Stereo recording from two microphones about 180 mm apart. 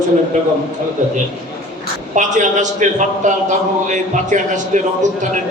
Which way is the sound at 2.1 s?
45° right (ahead or behind).